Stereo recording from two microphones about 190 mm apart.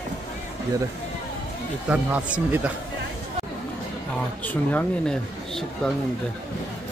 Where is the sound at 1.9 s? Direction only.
5° right (ahead or behind).